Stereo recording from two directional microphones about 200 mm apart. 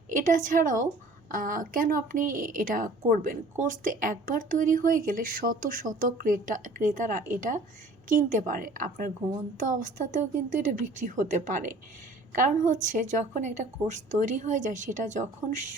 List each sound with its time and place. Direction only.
0.1 s a woman's voice: 40° right (ahead or behind)